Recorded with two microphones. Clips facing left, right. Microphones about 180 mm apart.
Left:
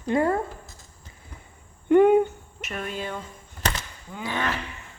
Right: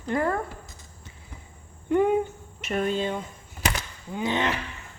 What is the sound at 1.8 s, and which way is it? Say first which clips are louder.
Cricket: left 6 dB; 65° left (ahead or behind).